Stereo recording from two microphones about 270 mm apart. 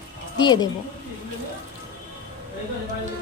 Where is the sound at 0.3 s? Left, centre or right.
Centre.